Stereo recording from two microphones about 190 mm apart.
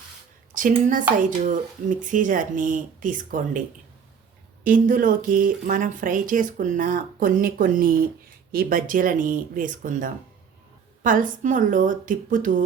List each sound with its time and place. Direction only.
0.7 s speech: 40° right (ahead or behind)
4.6 s speech: 45° right (ahead or behind)